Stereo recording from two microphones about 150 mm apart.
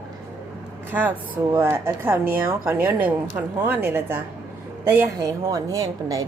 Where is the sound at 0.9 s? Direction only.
15° right (ahead or behind).